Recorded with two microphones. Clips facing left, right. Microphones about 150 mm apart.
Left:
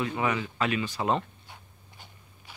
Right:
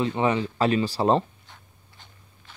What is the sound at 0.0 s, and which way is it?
Speech, 30° right (ahead or behind).